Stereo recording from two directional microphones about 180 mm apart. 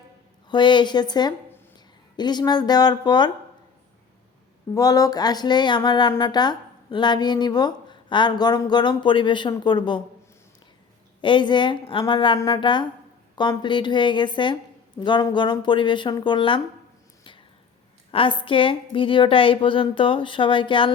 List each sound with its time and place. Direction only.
0.4 s speech: 25° left (ahead or behind)
4.7 s speech: 20° left (ahead or behind)
11.2 s speech: 25° left (ahead or behind)
18.1 s speech: 30° left (ahead or behind)